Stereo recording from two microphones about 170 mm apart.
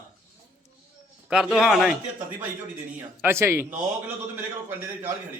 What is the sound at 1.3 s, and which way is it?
Speech, 5° right (ahead or behind).